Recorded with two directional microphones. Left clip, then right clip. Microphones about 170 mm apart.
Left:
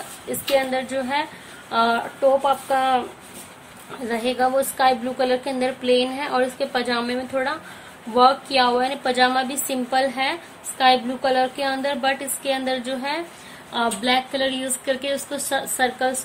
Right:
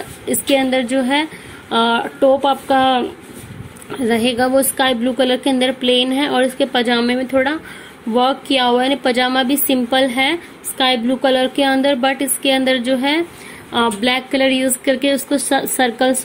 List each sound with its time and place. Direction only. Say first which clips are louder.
0.7 s a woman's voice: right 7 dB; 30° right (ahead or behind)
4.1 s a woman's voice: right 5 dB; 35° right (ahead or behind)